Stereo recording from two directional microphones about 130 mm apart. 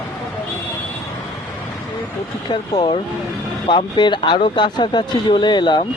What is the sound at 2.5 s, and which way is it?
Speech, 35° left (ahead or behind).